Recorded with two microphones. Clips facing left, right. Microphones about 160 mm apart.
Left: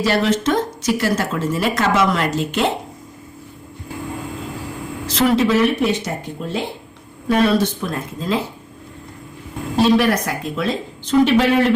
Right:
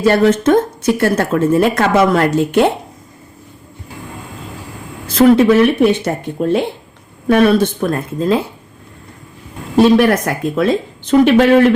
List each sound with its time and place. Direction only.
0.0 s speech: 50° right (ahead or behind)
5.0 s speech: 55° right (ahead or behind)
10.0 s speech: 55° right (ahead or behind)